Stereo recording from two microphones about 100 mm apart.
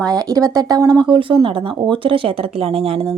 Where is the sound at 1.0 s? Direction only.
60° right (ahead or behind).